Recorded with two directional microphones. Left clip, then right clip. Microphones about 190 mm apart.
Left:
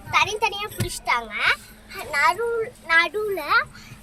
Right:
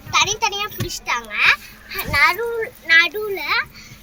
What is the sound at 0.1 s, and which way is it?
A child's voice, 40° left (ahead or behind).